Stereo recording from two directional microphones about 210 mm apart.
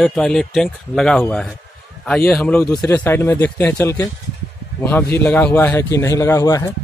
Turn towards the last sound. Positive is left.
turn(degrees=15)  # may be behind; listen again after turning